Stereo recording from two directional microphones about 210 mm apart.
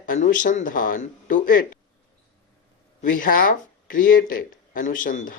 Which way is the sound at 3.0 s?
40° left (ahead or behind).